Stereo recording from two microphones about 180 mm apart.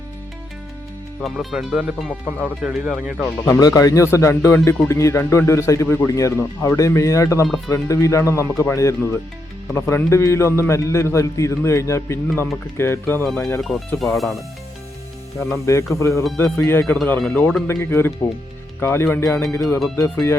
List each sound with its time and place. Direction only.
1.2 s speech: centre (ahead or behind)
3.4 s speech: 20° left (ahead or behind)
13.6 s speech: centre (ahead or behind)
15.5 s speech: 15° left (ahead or behind)